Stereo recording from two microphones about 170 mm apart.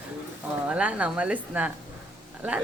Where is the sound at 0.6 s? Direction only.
10° right (ahead or behind).